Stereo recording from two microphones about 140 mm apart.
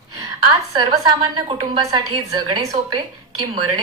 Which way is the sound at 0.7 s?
35° right (ahead or behind).